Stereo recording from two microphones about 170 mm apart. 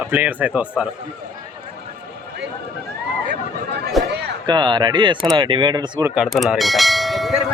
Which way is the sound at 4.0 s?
Centre (ahead or behind).